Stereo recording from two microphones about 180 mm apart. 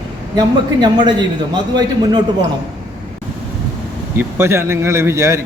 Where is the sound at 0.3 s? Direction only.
25° right (ahead or behind).